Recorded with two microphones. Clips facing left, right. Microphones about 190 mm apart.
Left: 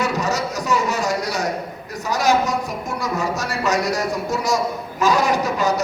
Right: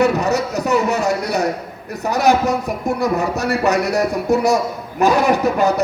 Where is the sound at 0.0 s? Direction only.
60° right (ahead or behind).